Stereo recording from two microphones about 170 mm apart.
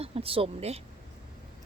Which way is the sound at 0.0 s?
35° right (ahead or behind).